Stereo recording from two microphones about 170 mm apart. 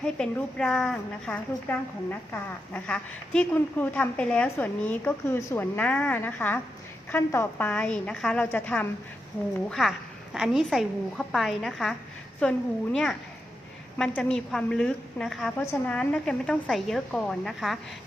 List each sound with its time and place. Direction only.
0.0 s a woman's voice: 5° left (ahead or behind)